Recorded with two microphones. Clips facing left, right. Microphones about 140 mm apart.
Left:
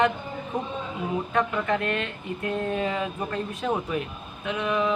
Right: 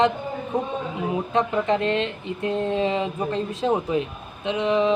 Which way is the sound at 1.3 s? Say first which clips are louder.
Right 4 dB; 25° right (ahead or behind).